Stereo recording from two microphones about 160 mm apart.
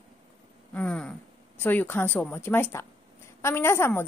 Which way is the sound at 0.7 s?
5° left (ahead or behind).